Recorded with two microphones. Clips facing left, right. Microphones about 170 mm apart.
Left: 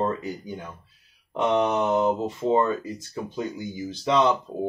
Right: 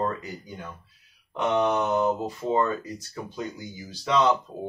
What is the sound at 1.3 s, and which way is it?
Speech, 25° left (ahead or behind).